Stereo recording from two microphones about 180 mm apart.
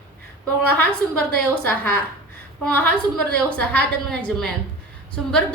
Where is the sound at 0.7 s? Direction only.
10° left (ahead or behind).